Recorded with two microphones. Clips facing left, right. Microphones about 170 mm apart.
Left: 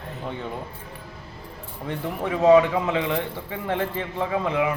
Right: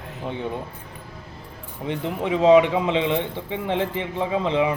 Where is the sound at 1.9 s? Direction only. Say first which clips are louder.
Right 3 dB; 15° right (ahead or behind).